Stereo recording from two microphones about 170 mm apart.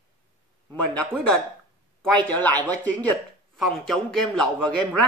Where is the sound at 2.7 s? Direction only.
10° left (ahead or behind).